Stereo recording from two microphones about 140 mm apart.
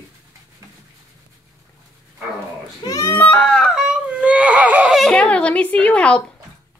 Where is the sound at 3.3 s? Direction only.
5° left (ahead or behind).